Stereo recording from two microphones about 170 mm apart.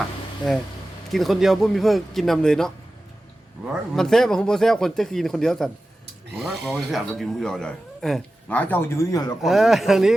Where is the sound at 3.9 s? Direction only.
5° left (ahead or behind); by 9.3 s 20° left (ahead or behind).